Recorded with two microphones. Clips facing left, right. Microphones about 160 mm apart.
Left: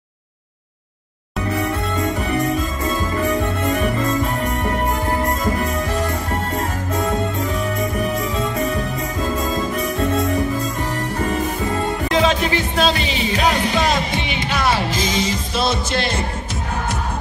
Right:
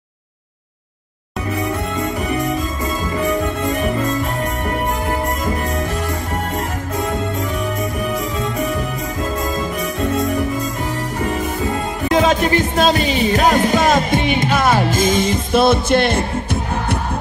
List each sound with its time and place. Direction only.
12.1 s music: 50° right (ahead or behind)